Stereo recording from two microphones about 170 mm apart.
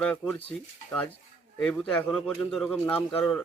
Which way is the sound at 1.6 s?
5° left (ahead or behind).